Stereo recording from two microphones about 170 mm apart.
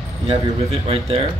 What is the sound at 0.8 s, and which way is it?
Speech, 35° right (ahead or behind).